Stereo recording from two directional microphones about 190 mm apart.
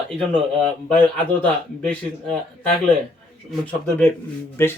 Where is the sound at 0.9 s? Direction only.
5° left (ahead or behind).